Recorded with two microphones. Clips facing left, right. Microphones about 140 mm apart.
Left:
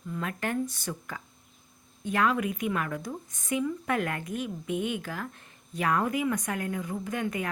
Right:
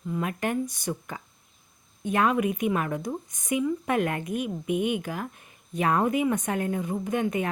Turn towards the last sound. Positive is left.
turn(degrees=-20)  # may be behind; listen again after turning